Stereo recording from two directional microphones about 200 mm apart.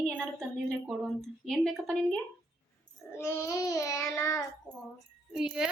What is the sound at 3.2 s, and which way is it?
Child singing, 15° left (ahead or behind).